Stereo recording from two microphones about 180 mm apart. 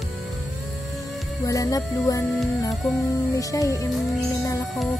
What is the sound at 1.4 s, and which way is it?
Music, 20° left (ahead or behind).